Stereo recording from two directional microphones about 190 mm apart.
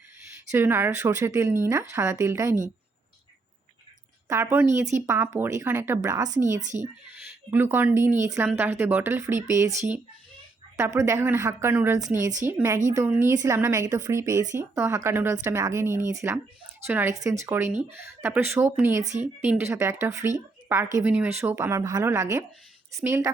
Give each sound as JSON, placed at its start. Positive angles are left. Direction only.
{"t": 0.5, "sound": "speech", "side_deg": -10}
{"t": 4.3, "sound": "speech", "side_deg": -15}
{"t": 6.6, "sound": "a woman's voice", "side_deg": -40}
{"t": 7.5, "sound": "speech", "side_deg": -10}
{"t": 19.0, "sound": "a woman's voice", "side_deg": -40}
{"t": 19.4, "sound": "speech", "side_deg": -10}